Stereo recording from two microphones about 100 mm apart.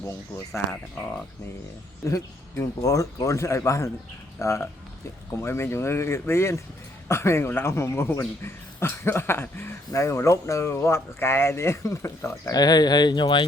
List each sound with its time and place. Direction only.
0.0 s a man's voice: 30° left (ahead or behind)
2.0 s a man's voice: 35° left (ahead or behind)
12.5 s speech: 40° left (ahead or behind)